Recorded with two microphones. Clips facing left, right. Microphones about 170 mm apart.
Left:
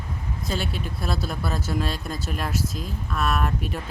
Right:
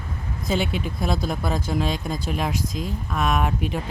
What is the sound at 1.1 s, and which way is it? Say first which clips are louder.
Speech: right 4 dB; 5° left (ahead or behind).